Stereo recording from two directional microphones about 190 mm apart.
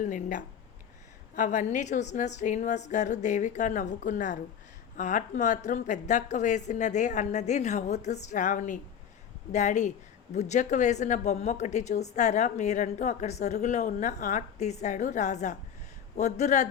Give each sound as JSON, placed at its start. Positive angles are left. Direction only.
{"t": 0.0, "sound": "a woman's voice", "side_deg": 45}